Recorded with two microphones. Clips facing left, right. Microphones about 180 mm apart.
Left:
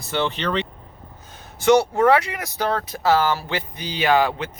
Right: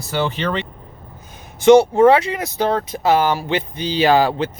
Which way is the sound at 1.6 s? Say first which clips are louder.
Right 6 dB; 20° right (ahead or behind).